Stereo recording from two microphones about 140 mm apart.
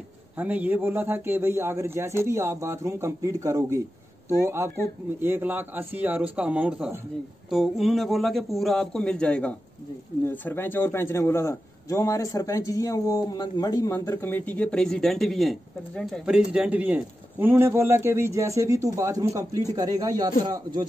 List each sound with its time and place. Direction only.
0.4 s a man's voice: 10° right (ahead or behind); by 20.8 s 30° right (ahead or behind)